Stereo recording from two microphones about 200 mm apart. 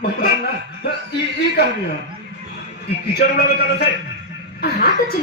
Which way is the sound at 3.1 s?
50° left (ahead or behind).